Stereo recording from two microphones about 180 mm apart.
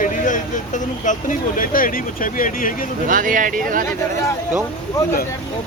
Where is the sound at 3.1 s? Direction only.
50° right (ahead or behind).